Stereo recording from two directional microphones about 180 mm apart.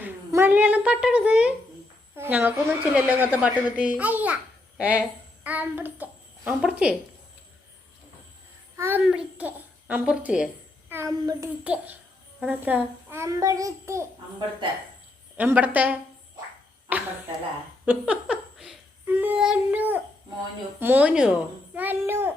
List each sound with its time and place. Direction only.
0.0 s a woman's voice: 15° right (ahead or behind)
8.7 s a sound: 15° right (ahead or behind)
9.0 s a child's voice: 5° right (ahead or behind)
11.6 s a woman's voice: 5° right (ahead or behind)
15.4 s a woman's voice: 10° right (ahead or behind)